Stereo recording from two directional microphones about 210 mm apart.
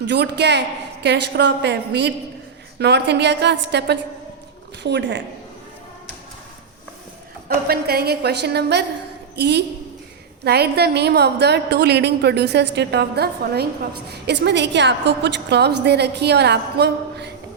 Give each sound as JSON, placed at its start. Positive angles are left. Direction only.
{"t": 0.0, "sound": "a woman's voice", "side_deg": -55}
{"t": 7.4, "sound": "a woman's voice", "side_deg": -45}